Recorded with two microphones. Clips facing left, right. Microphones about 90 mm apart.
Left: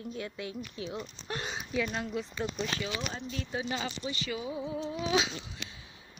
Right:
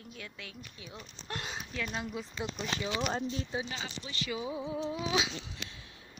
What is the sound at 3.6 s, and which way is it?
Speech, 55° left (ahead or behind).